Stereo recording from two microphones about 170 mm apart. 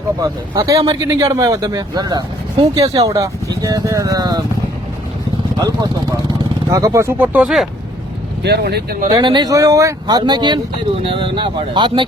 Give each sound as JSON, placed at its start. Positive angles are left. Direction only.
{"t": 0.2, "sound": "speech", "side_deg": -20}
{"t": 5.5, "sound": "speech", "side_deg": -20}
{"t": 8.4, "sound": "speech", "side_deg": -75}
{"t": 9.0, "sound": "speech", "side_deg": -25}